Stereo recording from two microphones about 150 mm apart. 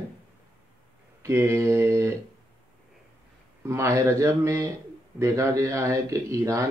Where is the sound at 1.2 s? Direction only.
20° right (ahead or behind).